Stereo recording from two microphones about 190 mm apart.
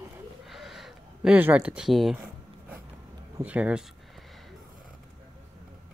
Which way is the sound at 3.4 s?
5° right (ahead or behind).